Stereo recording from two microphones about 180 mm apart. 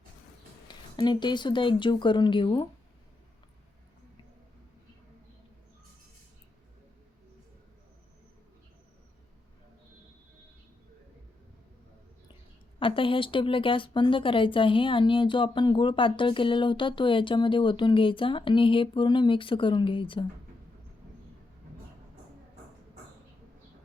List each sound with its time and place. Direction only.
0.7 s speech: 25° left (ahead or behind)
12.8 s speech: 30° left (ahead or behind)